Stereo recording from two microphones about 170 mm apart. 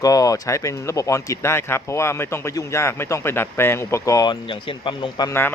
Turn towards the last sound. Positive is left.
turn(degrees=10)  # may be behind; listen again after turning